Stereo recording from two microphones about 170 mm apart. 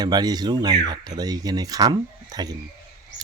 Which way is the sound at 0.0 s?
25° right (ahead or behind).